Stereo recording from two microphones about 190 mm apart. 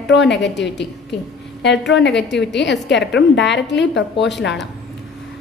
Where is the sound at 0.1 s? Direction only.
65° left (ahead or behind).